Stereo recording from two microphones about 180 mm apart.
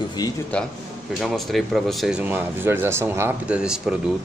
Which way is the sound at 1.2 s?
Centre (ahead or behind).